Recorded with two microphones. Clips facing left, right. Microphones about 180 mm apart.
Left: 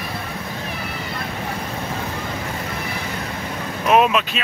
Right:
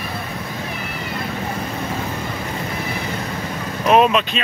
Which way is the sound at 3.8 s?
5° left (ahead or behind).